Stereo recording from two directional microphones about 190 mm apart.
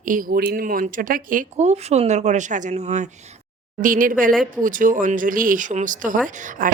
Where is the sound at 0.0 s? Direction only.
45° right (ahead or behind).